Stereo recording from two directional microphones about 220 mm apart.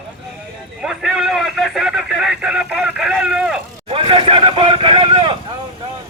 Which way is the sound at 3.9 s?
25° right (ahead or behind).